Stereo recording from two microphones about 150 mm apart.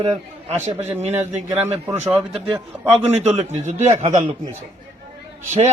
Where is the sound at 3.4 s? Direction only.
50° right (ahead or behind).